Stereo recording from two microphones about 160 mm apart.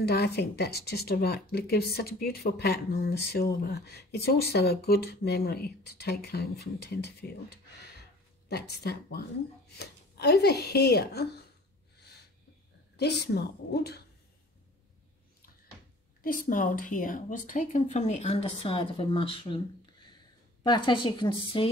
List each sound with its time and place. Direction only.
0.0 s speech: 85° left
8.5 s a woman's voice: 90° left
12.9 s a woman's voice: 90° left
16.2 s a woman's voice: 60° left (ahead or behind); by 21.6 s 35° left (ahead or behind)